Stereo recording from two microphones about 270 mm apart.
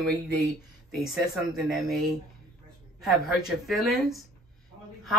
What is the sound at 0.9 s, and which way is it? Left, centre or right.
A woman's voice, centre.